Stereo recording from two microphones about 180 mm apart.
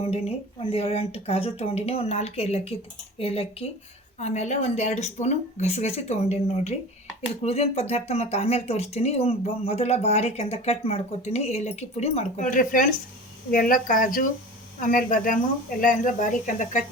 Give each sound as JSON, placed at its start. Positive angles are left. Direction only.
{"t": 0.0, "sound": "speech", "side_deg": 35}